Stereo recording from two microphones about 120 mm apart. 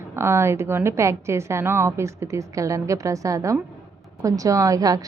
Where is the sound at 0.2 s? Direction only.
20° right (ahead or behind).